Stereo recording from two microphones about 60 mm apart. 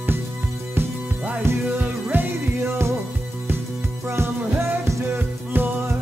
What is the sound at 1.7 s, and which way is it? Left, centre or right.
Music, right.